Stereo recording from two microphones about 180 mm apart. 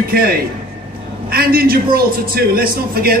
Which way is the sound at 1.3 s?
55° right (ahead or behind).